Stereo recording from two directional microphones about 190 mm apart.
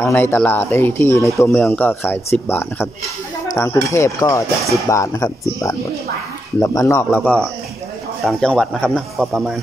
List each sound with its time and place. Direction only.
0.0 s speech: 10° left (ahead or behind)